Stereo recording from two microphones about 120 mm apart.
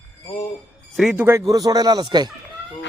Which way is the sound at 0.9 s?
5° right (ahead or behind).